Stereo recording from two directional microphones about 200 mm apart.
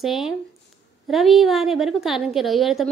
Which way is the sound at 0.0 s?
Centre (ahead or behind).